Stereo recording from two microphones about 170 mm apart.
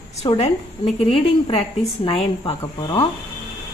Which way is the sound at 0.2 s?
35° left (ahead or behind).